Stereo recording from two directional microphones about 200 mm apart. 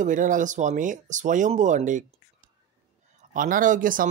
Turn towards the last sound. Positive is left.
turn(degrees=-40)  # may be behind; listen again after turning